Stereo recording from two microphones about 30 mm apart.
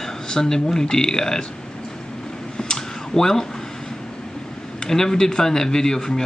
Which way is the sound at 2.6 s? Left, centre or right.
Centre.